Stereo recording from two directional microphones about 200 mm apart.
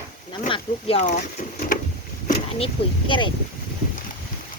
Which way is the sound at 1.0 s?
40° left (ahead or behind).